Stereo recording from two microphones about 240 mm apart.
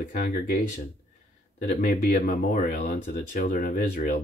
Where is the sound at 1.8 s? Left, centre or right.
Left.